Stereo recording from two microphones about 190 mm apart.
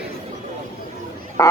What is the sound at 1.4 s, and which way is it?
Speech, 15° left (ahead or behind).